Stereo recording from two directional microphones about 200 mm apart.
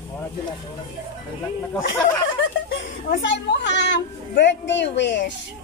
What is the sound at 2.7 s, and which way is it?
A woman's voice, 60° left (ahead or behind).